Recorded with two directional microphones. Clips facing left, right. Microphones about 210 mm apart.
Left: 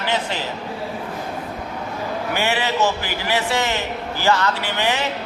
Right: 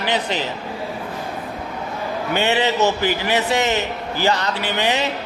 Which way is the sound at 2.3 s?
20° right (ahead or behind).